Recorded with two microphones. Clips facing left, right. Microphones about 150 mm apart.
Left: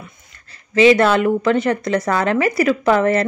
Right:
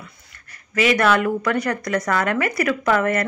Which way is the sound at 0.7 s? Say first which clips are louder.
Left 6 dB; 25° left (ahead or behind).